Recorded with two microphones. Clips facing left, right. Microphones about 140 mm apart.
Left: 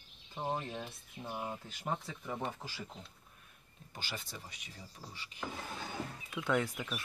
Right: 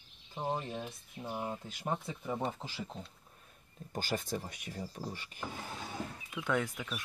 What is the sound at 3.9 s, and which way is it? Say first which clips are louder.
Speech: right 10 dB; 45° right (ahead or behind).